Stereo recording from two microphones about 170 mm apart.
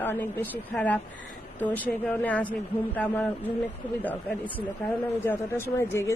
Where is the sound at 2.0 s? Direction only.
10° left (ahead or behind).